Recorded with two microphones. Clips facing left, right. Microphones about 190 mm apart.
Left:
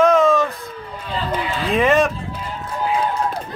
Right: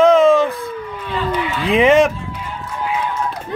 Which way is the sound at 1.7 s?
15° right (ahead or behind).